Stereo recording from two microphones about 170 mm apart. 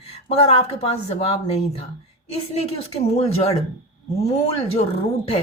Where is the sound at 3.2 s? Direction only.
35° left (ahead or behind).